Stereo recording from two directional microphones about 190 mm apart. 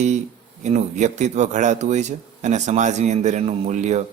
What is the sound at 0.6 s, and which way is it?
A man's voice, 35° right (ahead or behind).